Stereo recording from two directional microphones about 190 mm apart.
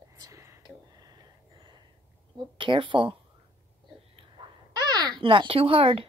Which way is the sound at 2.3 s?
25° right (ahead or behind).